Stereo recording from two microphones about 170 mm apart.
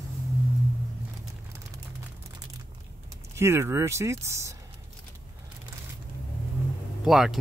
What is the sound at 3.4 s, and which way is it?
Speech, 15° right (ahead or behind).